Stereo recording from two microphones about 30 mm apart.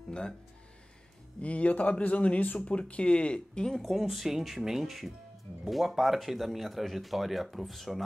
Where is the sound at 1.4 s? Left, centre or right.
Left.